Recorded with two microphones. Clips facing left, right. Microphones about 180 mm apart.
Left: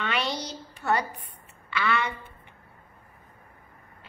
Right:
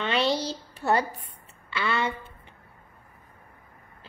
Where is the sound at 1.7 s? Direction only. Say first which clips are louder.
Even; 25° right (ahead or behind).